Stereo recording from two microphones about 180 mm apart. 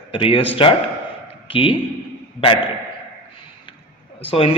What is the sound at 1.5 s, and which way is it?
Speech, 30° left (ahead or behind).